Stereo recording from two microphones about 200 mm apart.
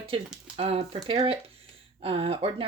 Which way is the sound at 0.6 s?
30° right (ahead or behind).